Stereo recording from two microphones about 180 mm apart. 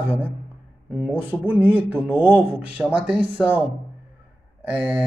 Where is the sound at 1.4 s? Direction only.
10° right (ahead or behind).